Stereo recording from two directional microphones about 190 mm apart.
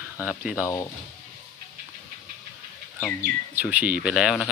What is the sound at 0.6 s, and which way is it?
Speech, 15° left (ahead or behind).